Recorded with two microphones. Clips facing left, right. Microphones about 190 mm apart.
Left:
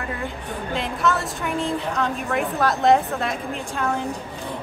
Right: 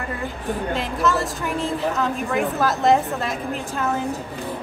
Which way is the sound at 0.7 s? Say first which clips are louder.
Left 1 dB; centre (ahead or behind).